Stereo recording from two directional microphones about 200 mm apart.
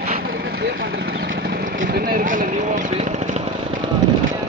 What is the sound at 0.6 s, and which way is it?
Vehicle, 50° right (ahead or behind).